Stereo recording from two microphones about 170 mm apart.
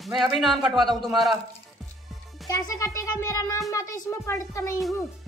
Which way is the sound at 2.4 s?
20° left (ahead or behind).